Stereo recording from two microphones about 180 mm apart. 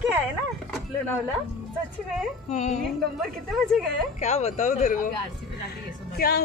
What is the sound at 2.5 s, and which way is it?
Speech, 40° left (ahead or behind).